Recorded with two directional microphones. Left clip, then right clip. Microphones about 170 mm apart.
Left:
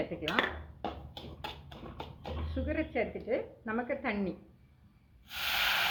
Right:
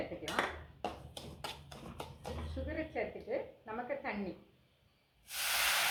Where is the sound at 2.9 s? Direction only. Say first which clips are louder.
Left 4 dB; 35° left (ahead or behind).